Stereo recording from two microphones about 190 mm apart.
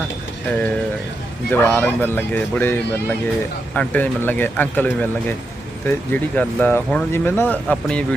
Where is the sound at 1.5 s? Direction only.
10° left (ahead or behind).